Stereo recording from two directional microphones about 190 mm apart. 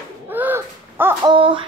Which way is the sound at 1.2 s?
25° right (ahead or behind).